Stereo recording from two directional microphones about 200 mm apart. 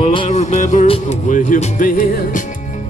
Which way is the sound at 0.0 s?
25° left (ahead or behind).